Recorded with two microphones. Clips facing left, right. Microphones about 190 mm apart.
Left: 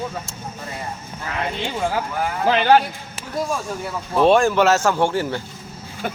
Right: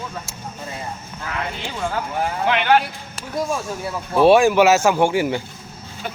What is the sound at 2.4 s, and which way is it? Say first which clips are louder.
Speech: left 4 dB; 35° left (ahead or behind).